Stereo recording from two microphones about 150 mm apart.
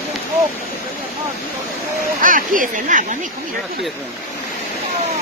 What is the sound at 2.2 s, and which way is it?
Speech, 65° right (ahead or behind).